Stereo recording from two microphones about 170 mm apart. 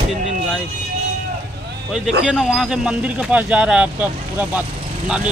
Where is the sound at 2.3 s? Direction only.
Centre (ahead or behind).